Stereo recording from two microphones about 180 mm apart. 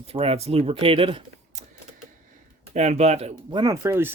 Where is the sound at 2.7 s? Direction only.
40° right (ahead or behind).